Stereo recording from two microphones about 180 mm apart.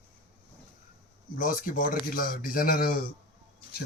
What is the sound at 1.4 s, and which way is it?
Speech, 50° left (ahead or behind).